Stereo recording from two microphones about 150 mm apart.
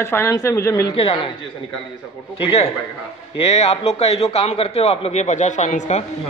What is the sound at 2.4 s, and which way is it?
A man's voice, 45° left (ahead or behind).